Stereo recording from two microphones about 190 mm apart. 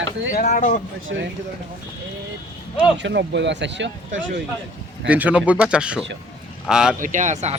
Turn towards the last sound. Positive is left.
turn(degrees=-40)  # may be behind; listen again after turning